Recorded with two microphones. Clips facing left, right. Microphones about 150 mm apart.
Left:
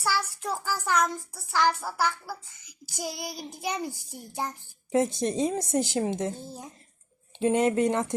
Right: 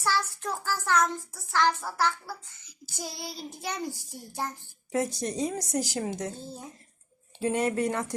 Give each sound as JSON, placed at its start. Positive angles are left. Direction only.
{"t": 0.0, "sound": "child singing", "side_deg": 10}
{"t": 7.3, "sound": "child singing", "side_deg": 20}